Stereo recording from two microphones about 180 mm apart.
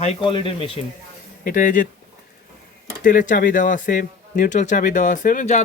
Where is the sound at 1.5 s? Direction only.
50° left (ahead or behind).